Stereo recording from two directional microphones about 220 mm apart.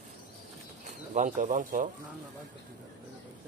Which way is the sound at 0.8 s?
35° right (ahead or behind).